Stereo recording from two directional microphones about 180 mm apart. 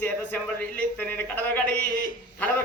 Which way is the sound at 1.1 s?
10° left (ahead or behind).